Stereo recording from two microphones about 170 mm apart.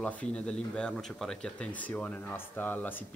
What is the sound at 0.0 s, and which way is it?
Speech, 5° left (ahead or behind).